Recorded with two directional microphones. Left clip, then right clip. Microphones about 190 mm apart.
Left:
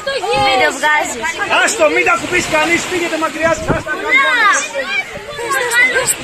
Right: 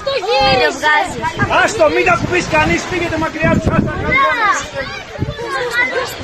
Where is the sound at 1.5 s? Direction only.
45° right (ahead or behind).